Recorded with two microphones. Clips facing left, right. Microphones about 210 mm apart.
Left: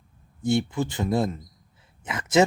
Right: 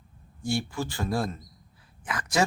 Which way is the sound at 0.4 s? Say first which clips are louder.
Left 6 dB; 20° left (ahead or behind).